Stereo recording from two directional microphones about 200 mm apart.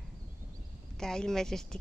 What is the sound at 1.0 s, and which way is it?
Speech, 5° left (ahead or behind).